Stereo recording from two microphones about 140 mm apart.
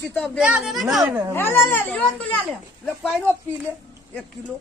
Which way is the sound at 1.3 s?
15° left (ahead or behind).